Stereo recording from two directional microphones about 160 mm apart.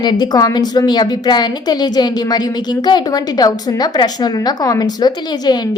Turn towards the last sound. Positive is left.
turn(degrees=25)  # may be behind; listen again after turning